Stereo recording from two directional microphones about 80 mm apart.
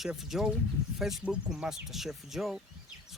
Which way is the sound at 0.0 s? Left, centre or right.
Centre.